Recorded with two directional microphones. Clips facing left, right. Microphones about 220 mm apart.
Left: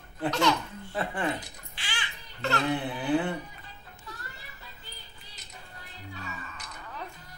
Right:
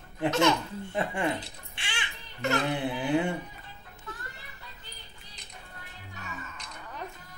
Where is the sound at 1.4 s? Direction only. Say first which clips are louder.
Right 1 dB; 25° right (ahead or behind).